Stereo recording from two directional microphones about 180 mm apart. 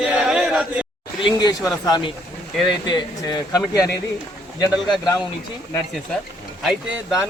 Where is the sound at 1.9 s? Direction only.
25° left (ahead or behind).